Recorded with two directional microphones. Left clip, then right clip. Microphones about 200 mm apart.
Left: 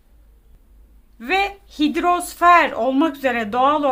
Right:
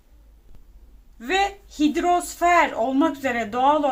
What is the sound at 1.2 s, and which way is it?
Speech, 20° left (ahead or behind).